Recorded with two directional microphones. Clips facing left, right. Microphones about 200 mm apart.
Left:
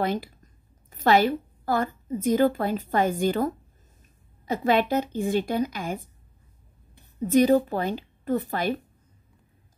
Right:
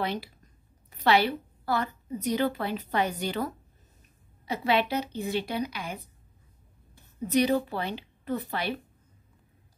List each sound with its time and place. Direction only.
0.0 s a woman's voice: 45° left (ahead or behind)
7.2 s a woman's voice: 45° left (ahead or behind)